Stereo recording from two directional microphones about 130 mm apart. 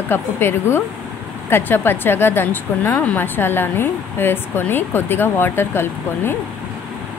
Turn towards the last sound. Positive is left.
turn(degrees=15)  # may be behind; listen again after turning